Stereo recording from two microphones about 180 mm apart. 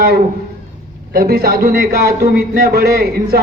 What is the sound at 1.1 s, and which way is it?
A man's voice, 60° right (ahead or behind).